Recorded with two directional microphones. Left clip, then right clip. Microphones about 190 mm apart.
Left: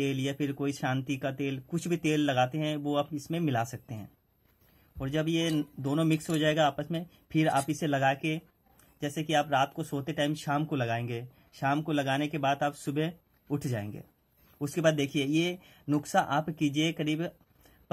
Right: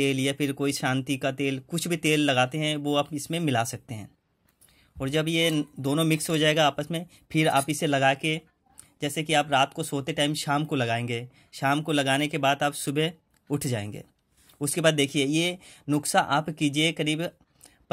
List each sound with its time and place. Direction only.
0.0 s speech: 35° right (ahead or behind)